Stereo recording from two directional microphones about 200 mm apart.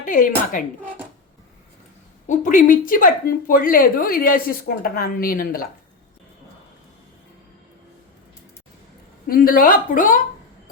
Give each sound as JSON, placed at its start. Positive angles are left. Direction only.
{"t": 0.0, "sound": "speech", "side_deg": 40}
{"t": 2.2, "sound": "speech", "side_deg": 40}
{"t": 9.2, "sound": "speech", "side_deg": 45}